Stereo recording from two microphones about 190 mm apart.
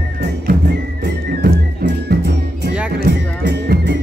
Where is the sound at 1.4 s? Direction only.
55° right (ahead or behind).